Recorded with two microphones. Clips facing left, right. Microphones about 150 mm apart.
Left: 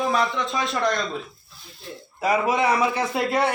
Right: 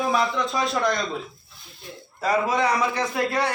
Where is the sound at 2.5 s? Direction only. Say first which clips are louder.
Left 2 dB; 20° left (ahead or behind).